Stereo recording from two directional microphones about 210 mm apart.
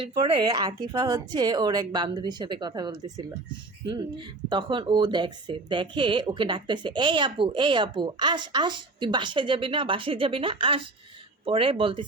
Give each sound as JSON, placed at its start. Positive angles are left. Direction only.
{"t": 0.0, "sound": "speech", "side_deg": -20}